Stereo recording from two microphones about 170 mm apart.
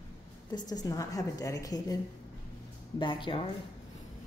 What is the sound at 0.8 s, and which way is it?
A woman's voice, 20° left (ahead or behind).